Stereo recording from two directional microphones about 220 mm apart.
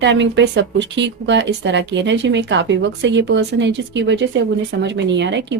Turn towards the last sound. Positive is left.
turn(degrees=-55)  # may be behind; listen again after turning